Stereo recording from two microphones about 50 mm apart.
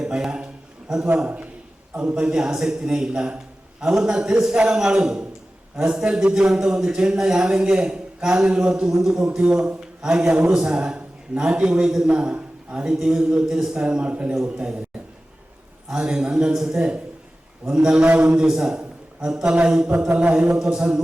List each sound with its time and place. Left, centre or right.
0.0 s a sound: centre
2.0 s a man's voice: centre
15.9 s a man's voice: centre
18.0 s a man's voice: right
18.3 s a man's voice: centre